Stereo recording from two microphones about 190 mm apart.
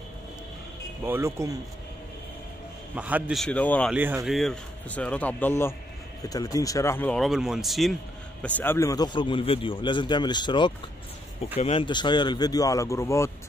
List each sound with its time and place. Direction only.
1.0 s speech: 15° right (ahead or behind)
3.0 s speech: 5° right (ahead or behind)
3.9 s speech: 10° right (ahead or behind); by 13.3 s 15° left (ahead or behind)